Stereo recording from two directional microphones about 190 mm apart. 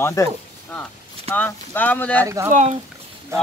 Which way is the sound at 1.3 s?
10° left (ahead or behind).